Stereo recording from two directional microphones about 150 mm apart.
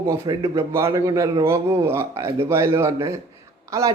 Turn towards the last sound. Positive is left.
turn(degrees=-20)  # may be behind; listen again after turning